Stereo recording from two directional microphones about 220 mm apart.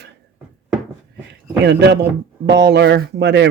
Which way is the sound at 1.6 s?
50° right (ahead or behind).